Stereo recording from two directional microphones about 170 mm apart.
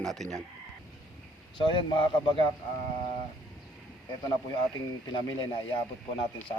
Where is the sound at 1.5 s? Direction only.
30° left (ahead or behind).